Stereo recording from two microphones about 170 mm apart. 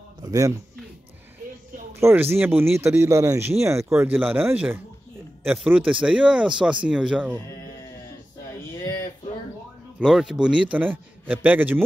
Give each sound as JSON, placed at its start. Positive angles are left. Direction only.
{"t": 0.2, "sound": "speech", "side_deg": -20}
{"t": 2.0, "sound": "speech", "side_deg": -15}
{"t": 9.9, "sound": "speech", "side_deg": -5}